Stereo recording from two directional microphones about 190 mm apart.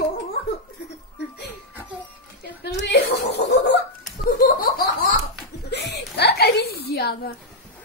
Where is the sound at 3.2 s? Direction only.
60° left (ahead or behind).